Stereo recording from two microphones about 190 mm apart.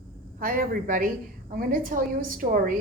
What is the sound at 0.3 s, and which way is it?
A woman's voice, 45° right (ahead or behind).